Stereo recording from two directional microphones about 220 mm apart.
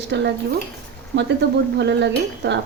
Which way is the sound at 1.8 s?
50° right (ahead or behind).